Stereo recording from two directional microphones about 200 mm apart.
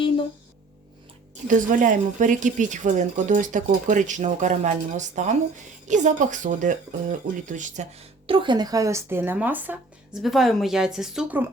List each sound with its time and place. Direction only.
1.5 s a woman's voice: 40° right (ahead or behind); by 11.4 s 5° right (ahead or behind)